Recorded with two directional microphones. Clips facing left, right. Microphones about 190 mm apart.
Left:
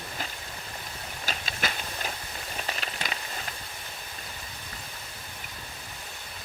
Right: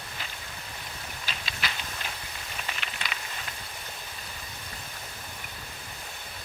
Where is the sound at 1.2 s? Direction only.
45° left (ahead or behind).